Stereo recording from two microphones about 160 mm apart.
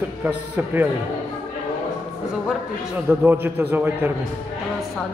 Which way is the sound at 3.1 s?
15° right (ahead or behind).